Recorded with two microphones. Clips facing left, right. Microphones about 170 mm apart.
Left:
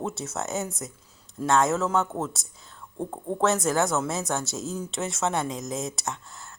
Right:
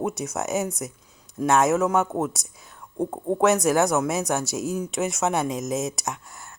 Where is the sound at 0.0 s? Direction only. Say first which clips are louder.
Right 4 dB; 15° right (ahead or behind).